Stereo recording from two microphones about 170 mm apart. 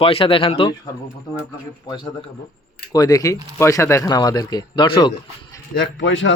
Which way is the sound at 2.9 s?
20° left (ahead or behind).